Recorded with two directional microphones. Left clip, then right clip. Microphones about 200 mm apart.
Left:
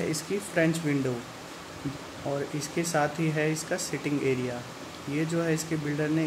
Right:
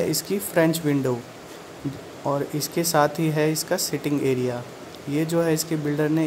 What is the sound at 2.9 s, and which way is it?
Speech, 30° right (ahead or behind).